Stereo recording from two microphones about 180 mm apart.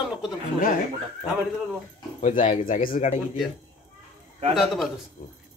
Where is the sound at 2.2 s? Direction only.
40° left (ahead or behind).